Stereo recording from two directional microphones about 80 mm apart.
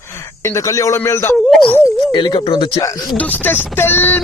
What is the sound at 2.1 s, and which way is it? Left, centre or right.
Speech, left.